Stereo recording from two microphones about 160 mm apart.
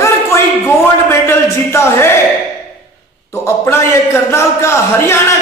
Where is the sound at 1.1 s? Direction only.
15° left (ahead or behind).